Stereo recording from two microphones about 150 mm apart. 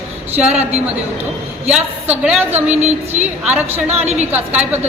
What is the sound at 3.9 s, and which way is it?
Speech, 45° right (ahead or behind).